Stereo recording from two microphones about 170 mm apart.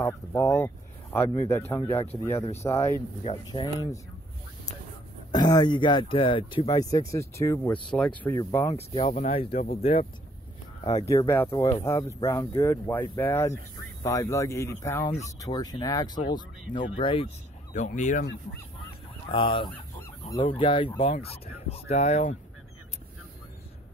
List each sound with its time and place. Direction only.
0.0 s speech: 15° left (ahead or behind)
5.3 s speech: 25° left (ahead or behind)
7.9 s speech: 5° left (ahead or behind)
8.4 s speech: 20° left (ahead or behind)
8.7 s speech: 35° left (ahead or behind)
9.6 s speech: 60° left (ahead or behind)
11.2 s speech: 15° left (ahead or behind); by 17.3 s 30° left (ahead or behind)
17.7 s speech: 45° left (ahead or behind)
19.3 s speech: 30° left (ahead or behind)